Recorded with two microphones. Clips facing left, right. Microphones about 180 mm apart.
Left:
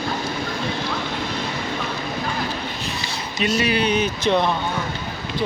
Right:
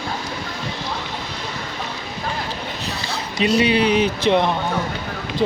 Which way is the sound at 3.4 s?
30° right (ahead or behind).